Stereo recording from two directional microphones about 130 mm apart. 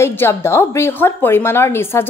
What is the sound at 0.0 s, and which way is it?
A woman's voice, 20° left (ahead or behind).